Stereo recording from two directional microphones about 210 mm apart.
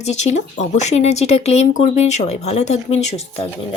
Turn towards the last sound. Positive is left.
turn(degrees=30)  # may be behind; listen again after turning